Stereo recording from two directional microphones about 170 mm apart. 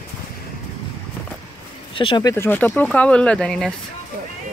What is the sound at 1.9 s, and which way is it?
Speech, 30° left (ahead or behind).